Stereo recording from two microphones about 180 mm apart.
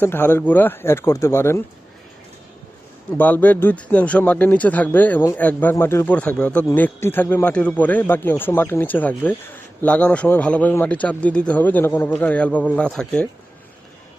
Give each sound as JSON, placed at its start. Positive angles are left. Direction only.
{"t": 0.0, "sound": "speech", "side_deg": 10}
{"t": 3.1, "sound": "speech", "side_deg": 10}